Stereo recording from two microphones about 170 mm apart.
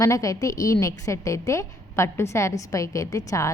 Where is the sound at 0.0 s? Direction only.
20° left (ahead or behind).